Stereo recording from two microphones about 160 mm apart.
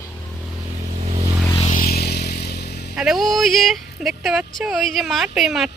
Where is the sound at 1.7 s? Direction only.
65° left (ahead or behind); by 2.5 s 90° left.